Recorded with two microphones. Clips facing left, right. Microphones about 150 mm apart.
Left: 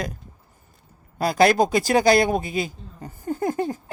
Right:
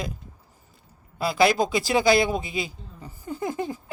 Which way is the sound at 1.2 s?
45° left (ahead or behind).